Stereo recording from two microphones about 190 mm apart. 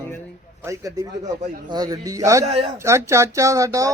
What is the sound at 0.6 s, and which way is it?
Speech, 15° right (ahead or behind).